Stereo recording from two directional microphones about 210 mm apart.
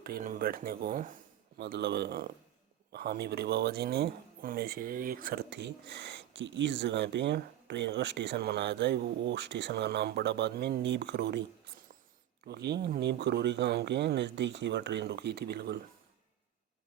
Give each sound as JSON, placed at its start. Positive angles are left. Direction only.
{"t": 0.0, "sound": "speech", "side_deg": -40}
{"t": 1.5, "sound": "speech", "side_deg": -55}
{"t": 12.5, "sound": "speech", "side_deg": -50}